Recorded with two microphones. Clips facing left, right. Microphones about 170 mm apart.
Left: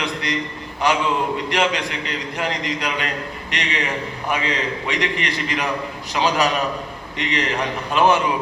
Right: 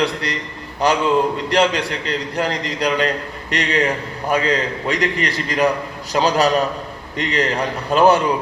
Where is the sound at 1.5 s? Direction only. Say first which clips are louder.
Right 6 dB; 35° right (ahead or behind).